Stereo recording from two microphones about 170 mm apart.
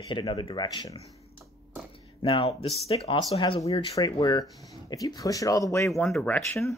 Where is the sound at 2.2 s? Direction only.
30° left (ahead or behind).